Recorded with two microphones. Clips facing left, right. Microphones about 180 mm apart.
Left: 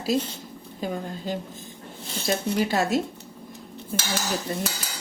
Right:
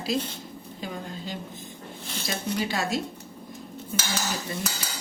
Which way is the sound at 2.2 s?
45° left (ahead or behind).